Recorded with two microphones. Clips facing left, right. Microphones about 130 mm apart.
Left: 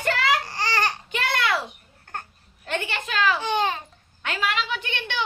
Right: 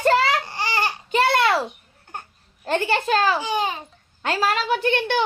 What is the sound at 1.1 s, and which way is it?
Speech, 35° right (ahead or behind).